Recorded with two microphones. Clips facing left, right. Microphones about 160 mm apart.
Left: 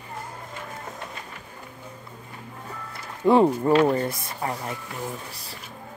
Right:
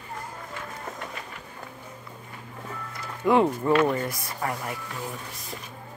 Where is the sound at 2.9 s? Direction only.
30° left (ahead or behind).